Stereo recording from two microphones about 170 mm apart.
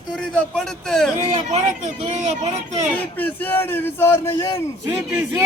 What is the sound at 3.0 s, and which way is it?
Speech, 10° left (ahead or behind).